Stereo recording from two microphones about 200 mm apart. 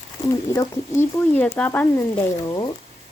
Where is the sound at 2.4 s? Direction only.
20° left (ahead or behind).